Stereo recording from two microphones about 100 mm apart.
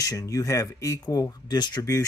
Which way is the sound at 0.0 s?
35° left (ahead or behind).